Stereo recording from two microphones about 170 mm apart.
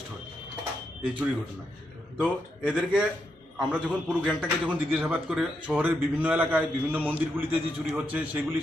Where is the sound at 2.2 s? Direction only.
5° right (ahead or behind).